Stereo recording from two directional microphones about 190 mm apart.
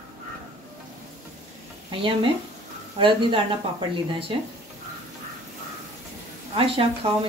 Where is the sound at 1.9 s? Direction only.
30° right (ahead or behind).